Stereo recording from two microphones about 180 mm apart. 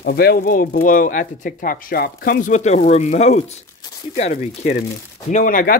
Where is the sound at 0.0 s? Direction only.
60° left (ahead or behind).